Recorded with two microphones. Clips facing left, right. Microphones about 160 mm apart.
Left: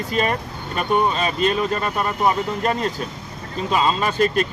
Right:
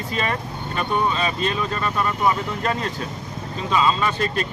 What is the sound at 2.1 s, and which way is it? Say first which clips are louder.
Speech: left 3 dB; 30° left (ahead or behind).